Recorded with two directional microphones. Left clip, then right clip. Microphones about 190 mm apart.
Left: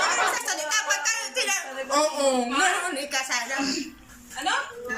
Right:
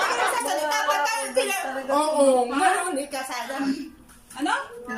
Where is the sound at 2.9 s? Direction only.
20° right (ahead or behind).